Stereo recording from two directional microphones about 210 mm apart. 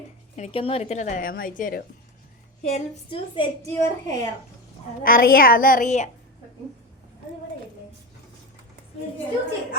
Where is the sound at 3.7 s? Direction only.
15° left (ahead or behind).